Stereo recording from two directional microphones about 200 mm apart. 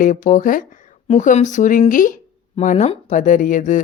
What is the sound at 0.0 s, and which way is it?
Speech, 40° left (ahead or behind).